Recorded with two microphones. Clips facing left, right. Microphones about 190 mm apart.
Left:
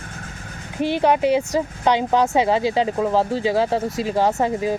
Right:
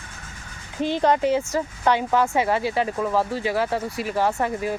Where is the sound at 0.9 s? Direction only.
15° left (ahead or behind).